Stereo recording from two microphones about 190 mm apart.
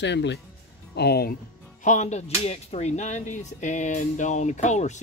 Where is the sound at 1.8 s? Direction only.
40° left (ahead or behind).